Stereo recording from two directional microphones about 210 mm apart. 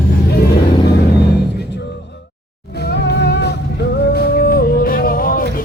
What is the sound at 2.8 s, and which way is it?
Music, 50° left (ahead or behind).